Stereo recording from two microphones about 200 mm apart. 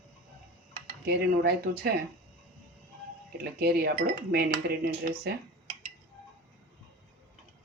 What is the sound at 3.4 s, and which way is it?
Speech, 50° right (ahead or behind).